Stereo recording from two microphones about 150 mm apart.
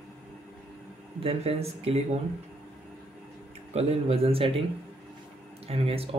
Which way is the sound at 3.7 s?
45° right (ahead or behind).